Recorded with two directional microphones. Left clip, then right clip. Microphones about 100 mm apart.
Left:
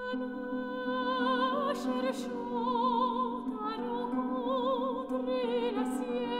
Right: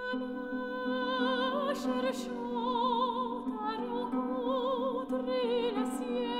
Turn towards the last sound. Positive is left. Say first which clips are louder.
# even
turn(degrees=-40)  # may be behind; listen again after turning